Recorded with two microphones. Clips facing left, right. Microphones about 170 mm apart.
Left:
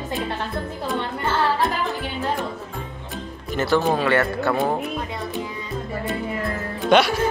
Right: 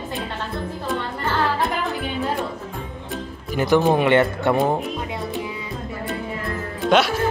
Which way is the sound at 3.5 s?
15° right (ahead or behind).